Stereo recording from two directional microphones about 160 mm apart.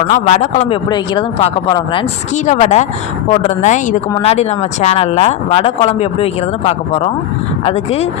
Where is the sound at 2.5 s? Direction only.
45° left (ahead or behind).